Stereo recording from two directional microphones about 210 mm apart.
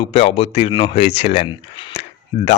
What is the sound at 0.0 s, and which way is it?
Speech, 25° left (ahead or behind).